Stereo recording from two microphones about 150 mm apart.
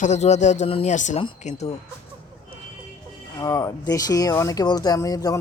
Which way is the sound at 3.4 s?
20° left (ahead or behind).